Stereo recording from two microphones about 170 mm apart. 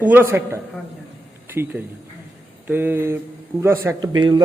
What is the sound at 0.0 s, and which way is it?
A man's voice, 10° right (ahead or behind).